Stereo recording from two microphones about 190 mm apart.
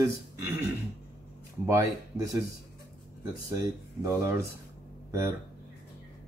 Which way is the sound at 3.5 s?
15° right (ahead or behind).